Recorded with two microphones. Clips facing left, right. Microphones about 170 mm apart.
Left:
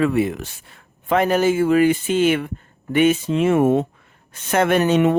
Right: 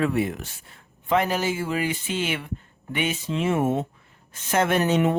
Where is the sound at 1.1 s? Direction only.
55° left (ahead or behind).